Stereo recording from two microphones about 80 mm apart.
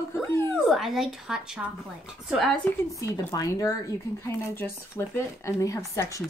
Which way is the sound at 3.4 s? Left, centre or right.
Left.